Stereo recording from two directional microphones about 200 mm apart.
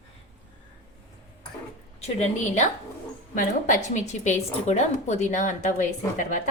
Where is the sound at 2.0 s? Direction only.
35° left (ahead or behind).